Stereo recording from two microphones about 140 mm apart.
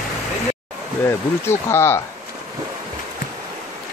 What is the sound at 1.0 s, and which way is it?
Speech, 20° left (ahead or behind).